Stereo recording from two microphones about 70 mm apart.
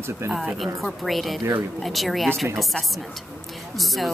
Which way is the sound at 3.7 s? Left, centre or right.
Centre.